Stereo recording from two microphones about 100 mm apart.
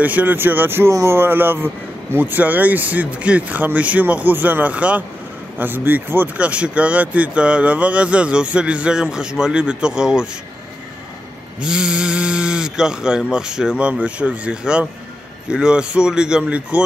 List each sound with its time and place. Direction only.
0.0 s speech: 15° right (ahead or behind)
11.6 s speech: 10° right (ahead or behind)